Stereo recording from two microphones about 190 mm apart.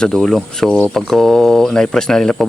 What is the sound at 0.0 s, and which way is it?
Speech, 5° left (ahead or behind).